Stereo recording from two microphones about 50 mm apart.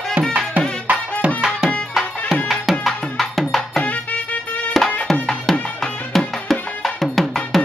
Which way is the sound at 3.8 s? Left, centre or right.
Left.